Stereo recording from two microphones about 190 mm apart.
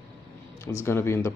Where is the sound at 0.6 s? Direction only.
15° left (ahead or behind).